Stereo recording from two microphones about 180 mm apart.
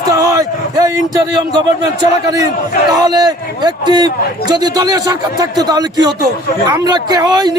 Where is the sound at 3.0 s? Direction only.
20° right (ahead or behind).